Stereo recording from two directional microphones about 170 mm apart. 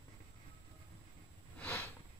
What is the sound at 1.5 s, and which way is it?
Sniff, 10° left (ahead or behind).